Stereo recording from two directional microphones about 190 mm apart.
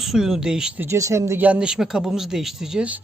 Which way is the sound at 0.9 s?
15° right (ahead or behind).